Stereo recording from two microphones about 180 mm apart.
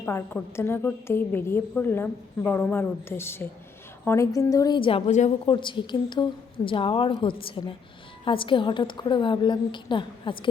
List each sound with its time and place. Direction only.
0.0 s a woman's voice: 15° left (ahead or behind); by 5.3 s 40° left (ahead or behind)
5.5 s a woman's voice: 25° left (ahead or behind)